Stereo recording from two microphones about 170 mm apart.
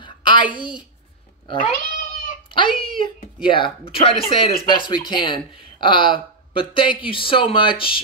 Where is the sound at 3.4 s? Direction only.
30° left (ahead or behind).